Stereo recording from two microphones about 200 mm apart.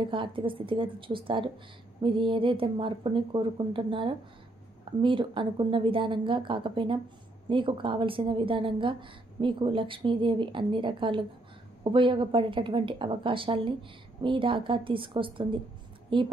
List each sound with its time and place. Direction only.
0.1 s a woman's voice: 25° right (ahead or behind)